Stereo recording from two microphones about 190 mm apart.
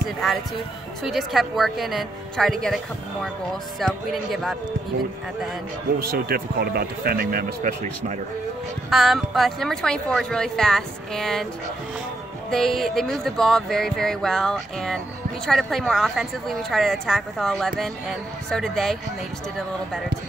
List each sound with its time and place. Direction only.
1.0 s a woman's voice: centre (ahead or behind)
3.8 s a woman's voice: centre (ahead or behind)
5.9 s speech: 55° right (ahead or behind)
8.9 s a woman's voice: centre (ahead or behind)
12.4 s a woman's voice: centre (ahead or behind)